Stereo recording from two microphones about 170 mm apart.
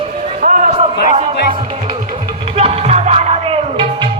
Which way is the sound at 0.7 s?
35° right (ahead or behind).